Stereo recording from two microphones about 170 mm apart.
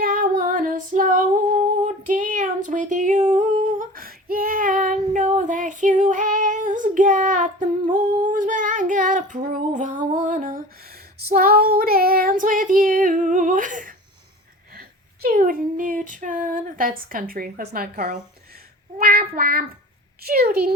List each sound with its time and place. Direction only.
0.0 s female singing: 55° right (ahead or behind)
5.4 s child singing: 50° right (ahead or behind)
8.3 s female singing: 50° right (ahead or behind)
14.7 s child singing: 60° right (ahead or behind)